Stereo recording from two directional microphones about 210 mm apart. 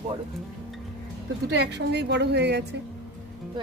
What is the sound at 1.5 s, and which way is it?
A woman's voice, 55° right (ahead or behind).